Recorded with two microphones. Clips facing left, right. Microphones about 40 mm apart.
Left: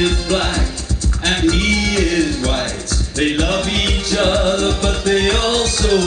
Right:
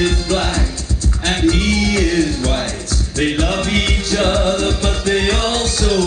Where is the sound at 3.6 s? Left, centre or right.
Left.